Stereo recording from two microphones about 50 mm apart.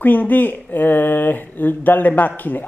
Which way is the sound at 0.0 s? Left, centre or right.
Left.